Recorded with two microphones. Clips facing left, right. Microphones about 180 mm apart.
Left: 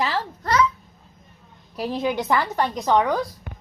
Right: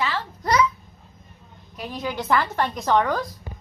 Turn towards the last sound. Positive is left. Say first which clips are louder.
# left 1 dB
turn(degrees=15)  # may be behind; listen again after turning